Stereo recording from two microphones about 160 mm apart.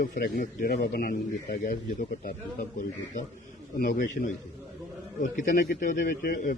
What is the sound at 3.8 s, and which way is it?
Speech, 55° left (ahead or behind).